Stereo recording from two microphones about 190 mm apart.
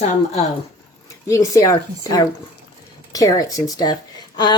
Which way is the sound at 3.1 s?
15° left (ahead or behind).